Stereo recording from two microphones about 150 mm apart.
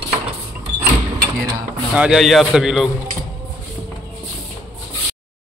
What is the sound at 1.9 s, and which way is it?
Speech, 5° right (ahead or behind).